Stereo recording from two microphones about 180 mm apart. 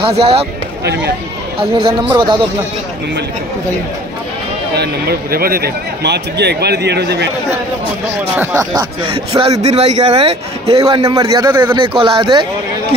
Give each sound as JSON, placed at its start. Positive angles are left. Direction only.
{"t": 0.0, "sound": "a man's voice", "side_deg": -35}
{"t": 1.6, "sound": "speech", "side_deg": -30}
{"t": 4.7, "sound": "speech", "side_deg": -60}
{"t": 8.4, "sound": "speech", "side_deg": -20}
{"t": 9.0, "sound": "speech", "side_deg": -30}
{"t": 9.6, "sound": "a man's voice", "side_deg": -40}
{"t": 11.1, "sound": "speech", "side_deg": -20}
{"t": 11.8, "sound": "speech", "side_deg": -30}